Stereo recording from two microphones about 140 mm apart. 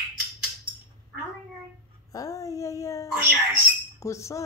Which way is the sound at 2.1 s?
25° left (ahead or behind).